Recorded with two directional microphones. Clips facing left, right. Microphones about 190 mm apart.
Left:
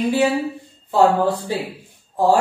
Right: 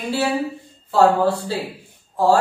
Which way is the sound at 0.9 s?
15° left (ahead or behind).